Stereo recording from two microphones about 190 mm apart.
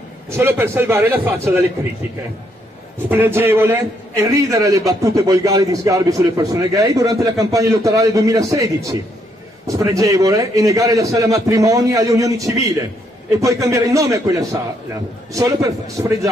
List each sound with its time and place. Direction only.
0.4 s a man's voice: 10° right (ahead or behind)
3.1 s a man's voice: 10° right (ahead or behind)